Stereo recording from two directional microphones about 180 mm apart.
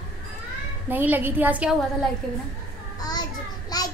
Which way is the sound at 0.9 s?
10° right (ahead or behind).